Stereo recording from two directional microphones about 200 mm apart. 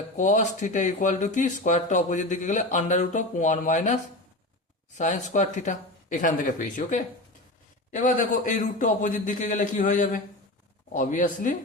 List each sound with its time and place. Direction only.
0.2 s speech: 40° left (ahead or behind)